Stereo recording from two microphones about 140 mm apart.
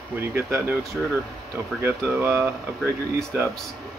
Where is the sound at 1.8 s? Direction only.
15° right (ahead or behind).